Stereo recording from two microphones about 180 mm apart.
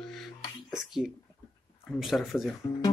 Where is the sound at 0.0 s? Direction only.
Centre (ahead or behind).